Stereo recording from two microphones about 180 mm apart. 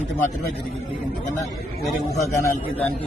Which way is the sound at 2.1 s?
15° left (ahead or behind).